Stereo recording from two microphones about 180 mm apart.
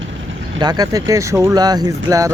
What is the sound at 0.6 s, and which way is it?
Speech, 20° right (ahead or behind).